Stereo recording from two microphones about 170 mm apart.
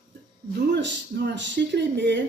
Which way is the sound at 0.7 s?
85° right.